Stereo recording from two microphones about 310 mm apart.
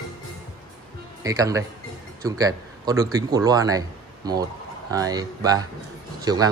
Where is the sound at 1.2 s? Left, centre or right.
Centre.